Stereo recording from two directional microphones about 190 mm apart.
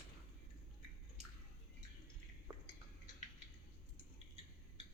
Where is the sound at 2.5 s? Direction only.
15° right (ahead or behind).